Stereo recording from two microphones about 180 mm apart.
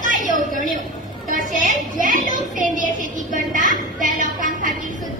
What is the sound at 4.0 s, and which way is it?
Music, 45° right (ahead or behind).